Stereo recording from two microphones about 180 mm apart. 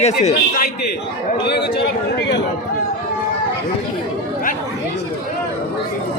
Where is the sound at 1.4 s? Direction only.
70° left (ahead or behind).